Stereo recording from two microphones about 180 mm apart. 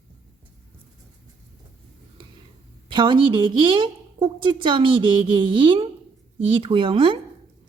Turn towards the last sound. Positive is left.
turn(degrees=-30)  # may be behind; listen again after turning